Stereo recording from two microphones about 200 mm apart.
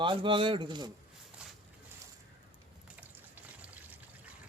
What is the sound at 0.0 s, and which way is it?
Speech, 25° right (ahead or behind).